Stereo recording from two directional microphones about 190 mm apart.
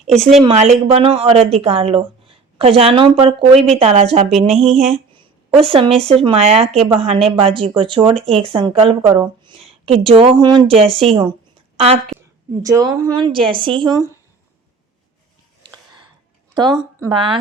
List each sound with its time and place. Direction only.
0.3 s speech: 35° right (ahead or behind)
4.6 s a sound: 30° right (ahead or behind)
5.6 s speech: 30° right (ahead or behind)
12.1 s a sound: 15° right (ahead or behind)
12.6 s a woman's voice: 15° right (ahead or behind)
16.6 s speech: 20° right (ahead or behind)